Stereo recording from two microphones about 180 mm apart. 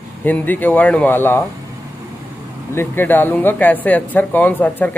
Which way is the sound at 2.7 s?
10° left (ahead or behind).